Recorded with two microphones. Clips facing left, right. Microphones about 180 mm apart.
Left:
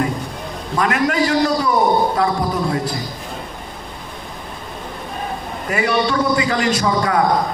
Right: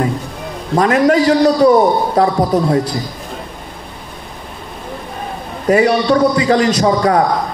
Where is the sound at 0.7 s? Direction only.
40° right (ahead or behind).